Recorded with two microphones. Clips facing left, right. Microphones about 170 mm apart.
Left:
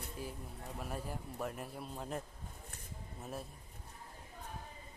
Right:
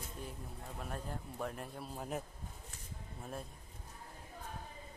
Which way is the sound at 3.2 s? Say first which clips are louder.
Left 1 dB; 5° left (ahead or behind).